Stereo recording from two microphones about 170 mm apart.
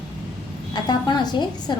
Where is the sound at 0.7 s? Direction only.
25° left (ahead or behind).